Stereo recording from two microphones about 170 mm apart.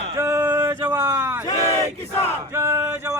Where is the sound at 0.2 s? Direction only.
15° right (ahead or behind).